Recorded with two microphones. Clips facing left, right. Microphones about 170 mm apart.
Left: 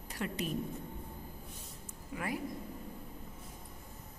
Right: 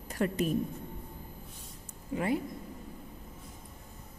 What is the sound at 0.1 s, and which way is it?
Speech, 45° right (ahead or behind).